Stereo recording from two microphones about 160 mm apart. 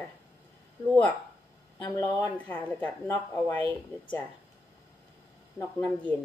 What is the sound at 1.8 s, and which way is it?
Speech, 20° left (ahead or behind).